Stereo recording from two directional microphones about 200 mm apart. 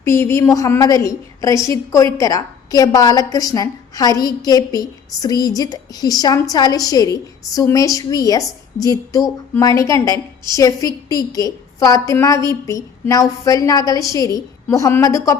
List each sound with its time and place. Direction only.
0.0 s a woman's voice: 15° left (ahead or behind)